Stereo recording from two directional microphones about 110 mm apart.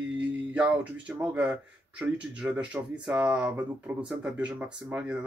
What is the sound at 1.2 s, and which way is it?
Speech, 10° right (ahead or behind).